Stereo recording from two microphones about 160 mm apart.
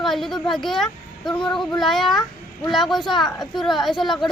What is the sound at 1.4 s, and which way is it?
Child singing, 30° left (ahead or behind).